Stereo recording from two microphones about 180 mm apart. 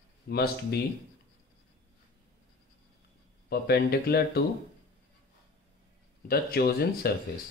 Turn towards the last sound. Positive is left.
turn(degrees=60)  # may be behind; listen again after turning